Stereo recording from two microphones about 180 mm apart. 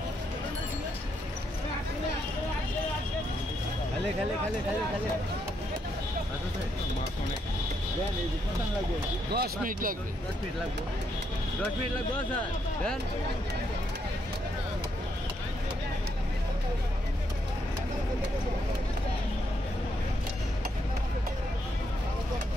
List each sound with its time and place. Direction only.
9.3 s speech: 55° right (ahead or behind)